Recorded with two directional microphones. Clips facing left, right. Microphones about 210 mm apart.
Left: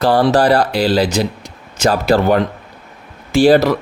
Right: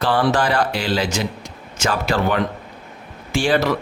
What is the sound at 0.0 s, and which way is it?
Speech, 40° left (ahead or behind).